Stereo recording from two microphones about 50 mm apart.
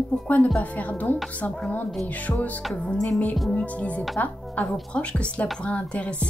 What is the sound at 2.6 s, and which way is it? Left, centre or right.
Music, centre.